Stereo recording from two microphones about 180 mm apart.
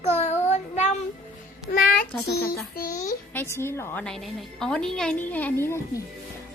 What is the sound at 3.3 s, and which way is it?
A woman's voice, 15° left (ahead or behind).